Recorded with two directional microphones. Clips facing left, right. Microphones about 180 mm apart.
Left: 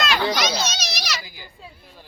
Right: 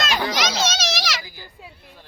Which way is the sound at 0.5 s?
90° right.